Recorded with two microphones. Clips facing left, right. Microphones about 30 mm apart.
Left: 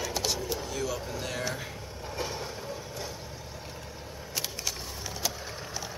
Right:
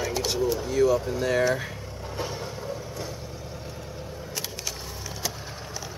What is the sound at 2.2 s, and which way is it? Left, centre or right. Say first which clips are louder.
Vehicle: right 2 dB; centre.